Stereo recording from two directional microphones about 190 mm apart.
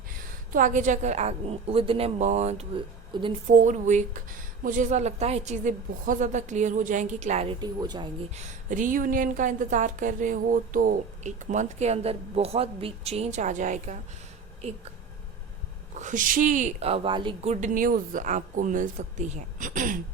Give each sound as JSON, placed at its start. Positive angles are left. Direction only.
{"t": 0.1, "sound": "a woman's voice", "side_deg": -45}
{"t": 3.5, "sound": "a woman's voice", "side_deg": -40}
{"t": 7.6, "sound": "speech", "side_deg": -20}
{"t": 8.4, "sound": "a woman's voice", "side_deg": -40}
{"t": 16.0, "sound": "a woman's voice", "side_deg": -40}